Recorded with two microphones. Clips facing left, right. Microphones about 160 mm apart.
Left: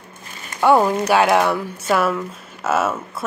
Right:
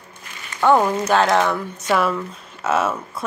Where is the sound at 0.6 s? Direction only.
10° left (ahead or behind).